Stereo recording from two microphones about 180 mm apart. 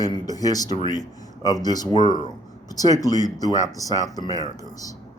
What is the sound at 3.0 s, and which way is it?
Speech, 20° left (ahead or behind).